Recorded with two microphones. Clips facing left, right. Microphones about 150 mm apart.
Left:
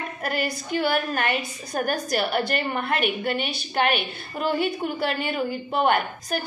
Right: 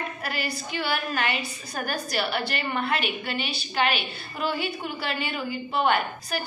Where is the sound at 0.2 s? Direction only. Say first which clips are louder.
Left 4 dB; 50° left (ahead or behind).